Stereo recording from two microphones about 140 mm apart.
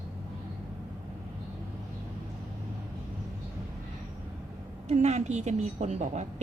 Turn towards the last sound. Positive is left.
turn(degrees=-55)  # may be behind; listen again after turning